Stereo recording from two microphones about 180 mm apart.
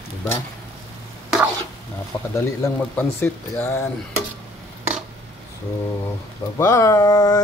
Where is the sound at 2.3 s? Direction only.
15° left (ahead or behind).